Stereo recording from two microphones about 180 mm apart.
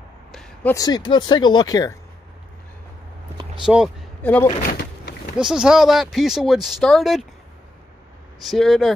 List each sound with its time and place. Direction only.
0.3 s a sound: 5° left (ahead or behind)
0.7 s speech: 25° left (ahead or behind)
3.6 s speech: 5° right (ahead or behind)
4.2 s speech: 10° left (ahead or behind)
4.6 s vehicle: 60° left (ahead or behind)
5.4 s speech: 5° right (ahead or behind)
8.5 s speech: centre (ahead or behind)